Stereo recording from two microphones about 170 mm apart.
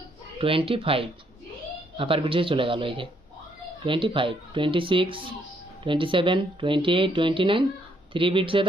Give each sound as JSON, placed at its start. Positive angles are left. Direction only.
{"t": 0.4, "sound": "speech", "side_deg": -35}